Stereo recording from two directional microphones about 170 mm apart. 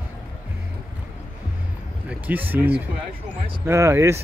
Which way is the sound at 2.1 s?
10° right (ahead or behind).